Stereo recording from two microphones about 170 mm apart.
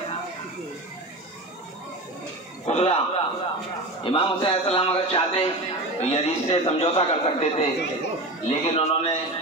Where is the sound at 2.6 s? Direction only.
40° left (ahead or behind).